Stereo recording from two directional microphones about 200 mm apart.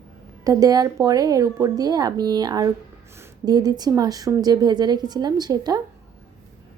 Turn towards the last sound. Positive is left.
turn(degrees=-20)  # may be behind; listen again after turning